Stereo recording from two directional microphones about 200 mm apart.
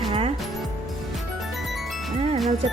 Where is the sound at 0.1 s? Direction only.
30° right (ahead or behind).